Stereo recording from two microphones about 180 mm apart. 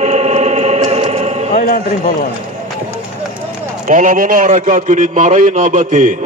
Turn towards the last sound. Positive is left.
turn(degrees=-50)  # may be behind; listen again after turning